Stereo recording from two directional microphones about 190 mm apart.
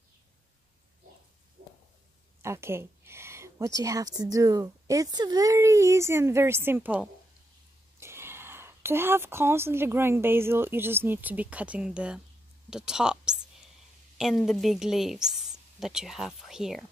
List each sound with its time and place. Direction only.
2.4 s a woman's voice: 15° right (ahead or behind)